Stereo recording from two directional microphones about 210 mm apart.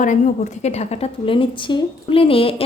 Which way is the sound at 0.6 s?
30° left (ahead or behind).